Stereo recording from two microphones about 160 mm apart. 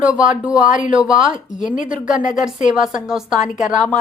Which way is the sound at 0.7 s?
55° left (ahead or behind).